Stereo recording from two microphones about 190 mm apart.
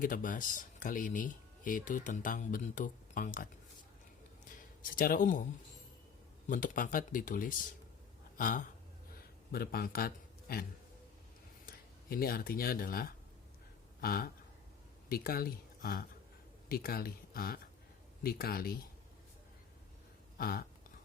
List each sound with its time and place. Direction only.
0.0 s speech: 45° left (ahead or behind)
4.8 s speech: 50° left (ahead or behind)
6.5 s speech: 45° left (ahead or behind)
20.4 s speech: 55° left (ahead or behind)